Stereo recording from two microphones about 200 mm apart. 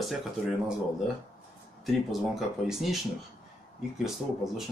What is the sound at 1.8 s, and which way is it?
Speech, centre (ahead or behind).